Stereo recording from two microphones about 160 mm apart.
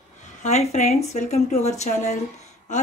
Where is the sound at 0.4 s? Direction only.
45° left (ahead or behind).